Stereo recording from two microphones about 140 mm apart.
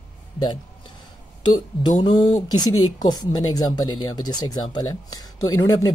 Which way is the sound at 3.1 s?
25° left (ahead or behind).